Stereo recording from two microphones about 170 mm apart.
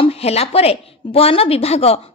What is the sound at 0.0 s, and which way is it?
A woman's voice, 35° left (ahead or behind).